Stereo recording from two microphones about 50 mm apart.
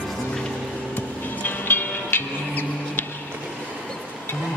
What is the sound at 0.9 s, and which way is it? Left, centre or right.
Vehicle, left.